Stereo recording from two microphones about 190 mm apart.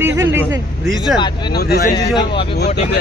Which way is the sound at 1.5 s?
55° left (ahead or behind).